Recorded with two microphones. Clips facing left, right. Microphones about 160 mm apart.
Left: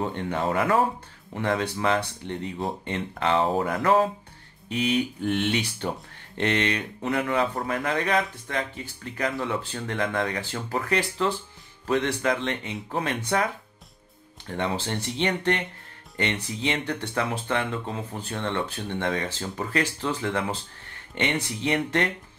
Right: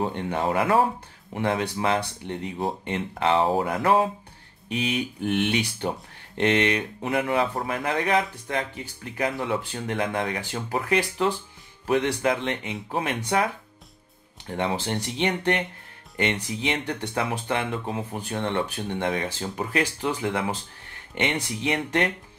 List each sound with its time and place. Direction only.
0.0 s speech: 15° right (ahead or behind)